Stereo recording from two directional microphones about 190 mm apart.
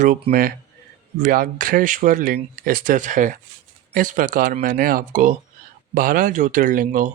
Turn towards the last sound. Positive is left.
turn(degrees=-45)  # may be behind; listen again after turning